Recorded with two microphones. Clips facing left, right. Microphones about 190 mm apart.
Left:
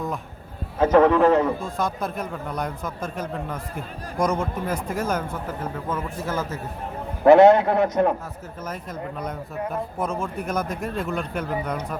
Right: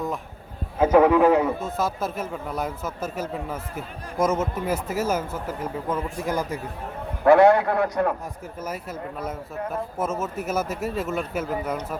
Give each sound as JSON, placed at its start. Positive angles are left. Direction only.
{"t": 0.8, "sound": "a man's voice", "side_deg": -10}
{"t": 7.3, "sound": "a man's voice", "side_deg": 20}
{"t": 8.6, "sound": "a man's voice", "side_deg": -10}